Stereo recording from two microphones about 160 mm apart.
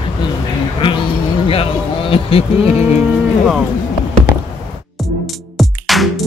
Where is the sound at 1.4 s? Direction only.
35° left (ahead or behind).